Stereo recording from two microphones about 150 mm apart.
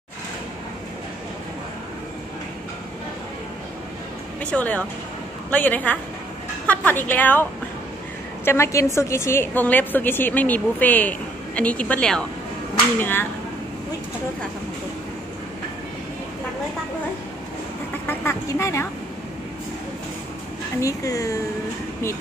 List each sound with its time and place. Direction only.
4.4 s a woman's voice: 10° left (ahead or behind)
8.5 s a woman's voice: 20° left (ahead or behind)
18.0 s speech: 15° left (ahead or behind)
20.8 s speech: 20° left (ahead or behind)